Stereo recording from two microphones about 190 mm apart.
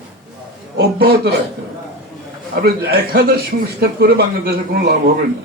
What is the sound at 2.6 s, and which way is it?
A man's voice, 55° right (ahead or behind).